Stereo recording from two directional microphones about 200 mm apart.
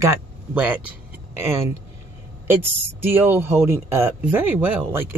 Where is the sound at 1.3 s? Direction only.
15° right (ahead or behind).